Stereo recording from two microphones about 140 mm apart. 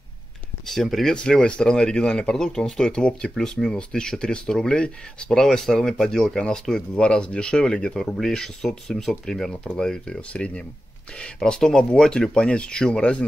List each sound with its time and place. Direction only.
0.7 s speech: centre (ahead or behind)